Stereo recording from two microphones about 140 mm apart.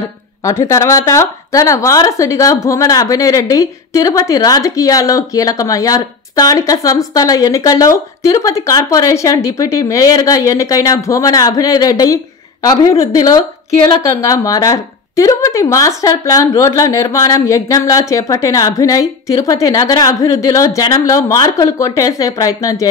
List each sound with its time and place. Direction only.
0.4 s speech: 20° left (ahead or behind)